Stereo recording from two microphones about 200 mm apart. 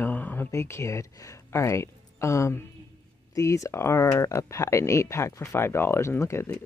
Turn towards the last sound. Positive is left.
turn(degrees=15)  # may be behind; listen again after turning